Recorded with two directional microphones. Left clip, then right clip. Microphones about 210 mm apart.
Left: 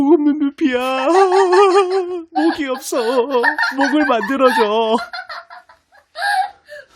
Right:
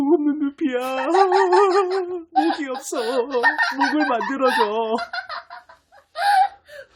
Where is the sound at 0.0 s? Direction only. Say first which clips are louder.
Left 5 dB; 40° left (ahead or behind).